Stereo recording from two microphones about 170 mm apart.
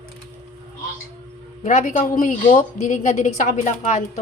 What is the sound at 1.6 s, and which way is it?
Speech, 45° left (ahead or behind).